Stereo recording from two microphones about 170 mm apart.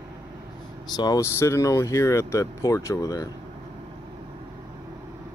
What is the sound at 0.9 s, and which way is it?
Speech, 25° left (ahead or behind).